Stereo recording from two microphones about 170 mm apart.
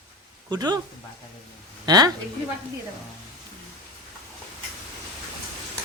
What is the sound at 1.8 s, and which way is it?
Speech, 20° right (ahead or behind).